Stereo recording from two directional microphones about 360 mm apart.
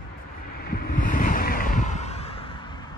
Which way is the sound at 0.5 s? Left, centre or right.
Left.